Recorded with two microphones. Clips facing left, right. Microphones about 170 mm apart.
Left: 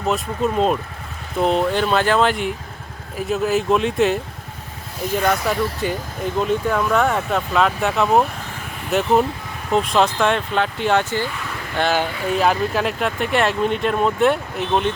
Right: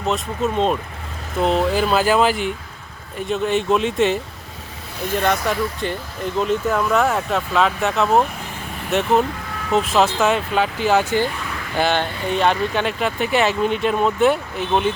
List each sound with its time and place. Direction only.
0.0 s speech: centre (ahead or behind)